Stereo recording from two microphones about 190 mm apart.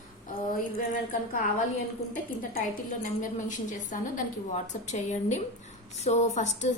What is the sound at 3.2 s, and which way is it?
A woman's voice, 40° left (ahead or behind).